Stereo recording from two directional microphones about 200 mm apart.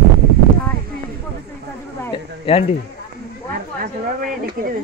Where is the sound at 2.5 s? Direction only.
25° left (ahead or behind).